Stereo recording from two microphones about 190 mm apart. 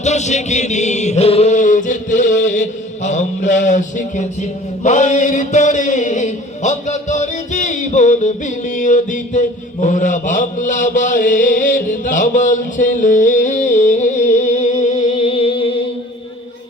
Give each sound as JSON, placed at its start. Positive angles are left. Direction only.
{"t": 0.0, "sound": "music", "side_deg": 35}